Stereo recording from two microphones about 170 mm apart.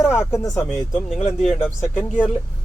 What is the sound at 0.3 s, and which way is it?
Speech, 15° left (ahead or behind).